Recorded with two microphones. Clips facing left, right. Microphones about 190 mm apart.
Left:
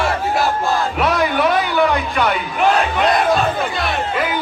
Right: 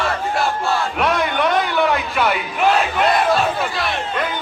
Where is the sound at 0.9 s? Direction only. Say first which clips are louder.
Left 2 dB; centre (ahead or behind).